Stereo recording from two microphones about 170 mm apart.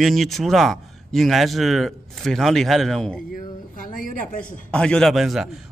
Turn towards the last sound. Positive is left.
turn(degrees=0)  # may be behind; listen again after turning